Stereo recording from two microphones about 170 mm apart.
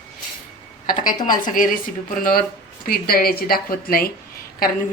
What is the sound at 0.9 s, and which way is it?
Speech, 55° left (ahead or behind).